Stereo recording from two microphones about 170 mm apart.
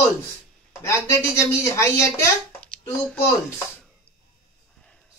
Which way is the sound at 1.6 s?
15° left (ahead or behind).